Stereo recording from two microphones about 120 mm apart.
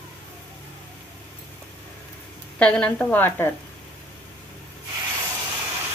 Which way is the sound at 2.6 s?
10° left (ahead or behind).